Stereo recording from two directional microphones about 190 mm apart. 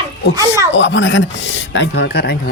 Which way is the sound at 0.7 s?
75° left (ahead or behind).